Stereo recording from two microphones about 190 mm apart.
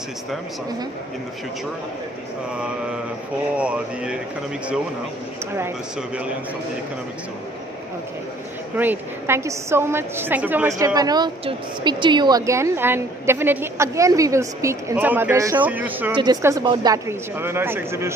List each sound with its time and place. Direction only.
3.5 s speech: 5° right (ahead or behind)
8.7 s a woman's voice: 10° right (ahead or behind)
10.8 s a woman's voice: 20° right (ahead or behind)
16.2 s a woman's voice: 20° right (ahead or behind)